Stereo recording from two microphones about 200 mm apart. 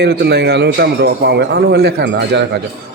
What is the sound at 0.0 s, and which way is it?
A man's voice, 55° right (ahead or behind).